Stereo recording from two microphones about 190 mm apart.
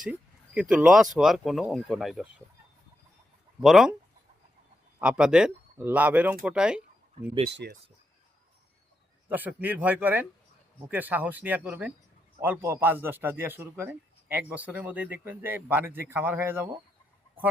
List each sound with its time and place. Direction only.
0.0 s speech: 5° right (ahead or behind)
3.6 s speech: centre (ahead or behind)
4.9 s speech: 5° right (ahead or behind)
7.5 s speech: 60° right (ahead or behind)
9.3 s a man's voice: 10° right (ahead or behind)